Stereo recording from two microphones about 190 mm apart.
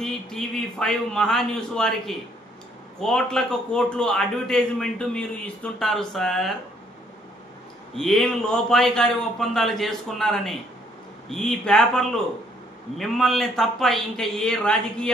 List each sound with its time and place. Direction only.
0.0 s a man's voice: 5° left (ahead or behind)
7.9 s a man's voice: centre (ahead or behind)